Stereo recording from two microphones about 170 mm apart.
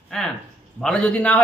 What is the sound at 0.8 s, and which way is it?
Speech, 5° left (ahead or behind).